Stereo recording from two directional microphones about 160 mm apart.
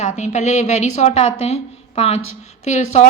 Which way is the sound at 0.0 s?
45° left (ahead or behind).